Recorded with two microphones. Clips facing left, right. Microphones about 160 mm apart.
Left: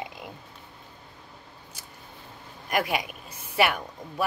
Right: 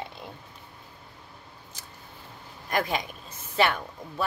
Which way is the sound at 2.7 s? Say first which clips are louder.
Left 1 dB; 10° left (ahead or behind).